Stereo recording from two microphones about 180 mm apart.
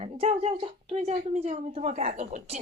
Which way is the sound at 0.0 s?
35° right (ahead or behind).